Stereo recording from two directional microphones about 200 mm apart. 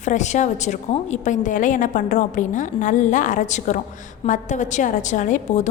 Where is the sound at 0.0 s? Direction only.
35° left (ahead or behind).